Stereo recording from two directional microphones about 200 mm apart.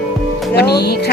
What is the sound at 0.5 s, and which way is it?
Speech, 55° left (ahead or behind).